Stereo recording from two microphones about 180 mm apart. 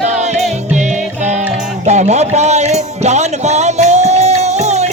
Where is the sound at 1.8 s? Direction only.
40° right (ahead or behind).